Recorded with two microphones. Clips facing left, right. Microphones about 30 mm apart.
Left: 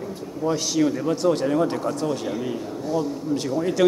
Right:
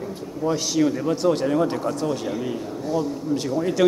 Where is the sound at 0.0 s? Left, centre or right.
Centre.